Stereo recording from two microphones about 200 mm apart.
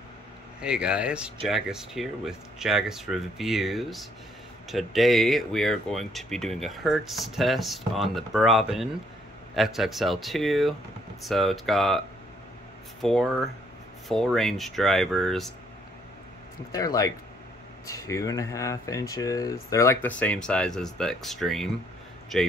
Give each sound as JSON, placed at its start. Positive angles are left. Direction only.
{"t": 0.6, "sound": "speech", "side_deg": -5}
{"t": 13.0, "sound": "speech", "side_deg": 0}
{"t": 16.7, "sound": "speech", "side_deg": 15}